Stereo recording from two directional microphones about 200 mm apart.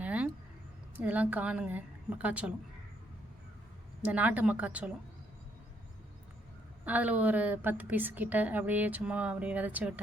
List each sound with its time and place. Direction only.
0.0 s a sound: 5° right (ahead or behind)
0.9 s a woman's voice: 5° right (ahead or behind)
4.0 s a woman's voice: 10° right (ahead or behind)
6.8 s a woman's voice: 10° right (ahead or behind)